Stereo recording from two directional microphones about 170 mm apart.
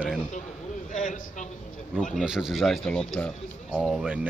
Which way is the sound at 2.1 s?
5° right (ahead or behind).